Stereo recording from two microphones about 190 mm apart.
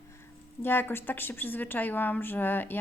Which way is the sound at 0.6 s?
10° left (ahead or behind).